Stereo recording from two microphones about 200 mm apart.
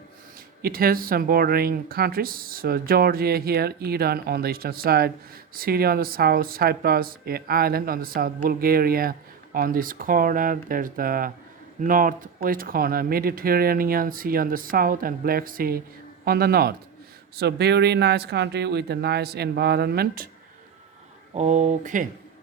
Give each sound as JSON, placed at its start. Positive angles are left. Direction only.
{"t": 0.6, "sound": "speech", "side_deg": -50}
{"t": 21.3, "sound": "speech", "side_deg": -35}